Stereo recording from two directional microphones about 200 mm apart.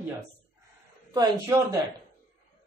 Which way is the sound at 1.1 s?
15° right (ahead or behind).